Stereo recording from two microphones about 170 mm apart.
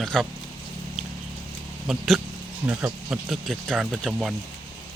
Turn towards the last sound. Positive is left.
turn(degrees=0)  # may be behind; listen again after turning